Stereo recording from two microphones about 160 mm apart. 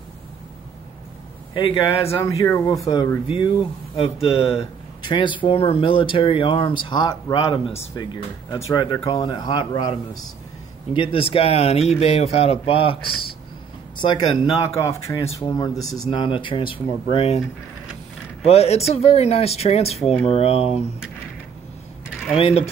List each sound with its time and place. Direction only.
1.5 s speech: 35° left (ahead or behind)
2.2 s speech: 20° left (ahead or behind)
7.6 s speech: 40° left (ahead or behind)
7.9 s speech: 25° left (ahead or behind)
14.0 s speech: 25° left (ahead or behind)
16.1 s speech: 30° left (ahead or behind)
18.4 s speech: 40° left (ahead or behind)
22.4 s speech: 40° left (ahead or behind)